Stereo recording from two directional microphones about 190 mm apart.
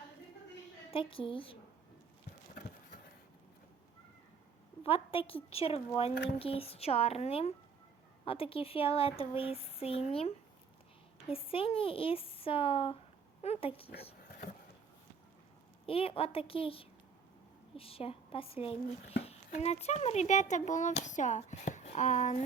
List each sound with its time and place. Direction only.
0.9 s speech: 30° left (ahead or behind)
4.8 s speech: 30° left (ahead or behind)
15.9 s speech: 30° left (ahead or behind)